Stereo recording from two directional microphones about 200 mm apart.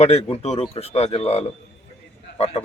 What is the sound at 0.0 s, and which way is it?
A man's voice, 30° left (ahead or behind).